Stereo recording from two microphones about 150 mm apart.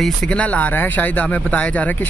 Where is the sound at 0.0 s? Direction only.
5° left (ahead or behind).